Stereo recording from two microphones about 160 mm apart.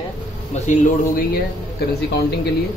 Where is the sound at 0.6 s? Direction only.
60° left (ahead or behind).